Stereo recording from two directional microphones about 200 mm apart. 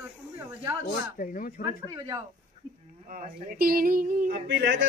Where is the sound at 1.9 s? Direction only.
20° right (ahead or behind).